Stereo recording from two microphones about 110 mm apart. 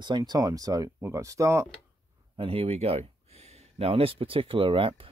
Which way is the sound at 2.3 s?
55° right (ahead or behind).